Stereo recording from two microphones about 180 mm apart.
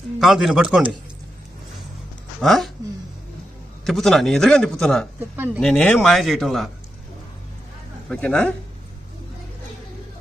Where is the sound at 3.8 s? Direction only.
Centre (ahead or behind).